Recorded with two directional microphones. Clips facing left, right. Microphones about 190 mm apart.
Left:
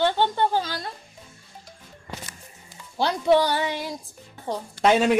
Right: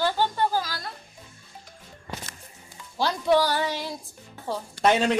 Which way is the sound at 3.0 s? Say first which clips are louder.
Left 2 dB; 20° left (ahead or behind).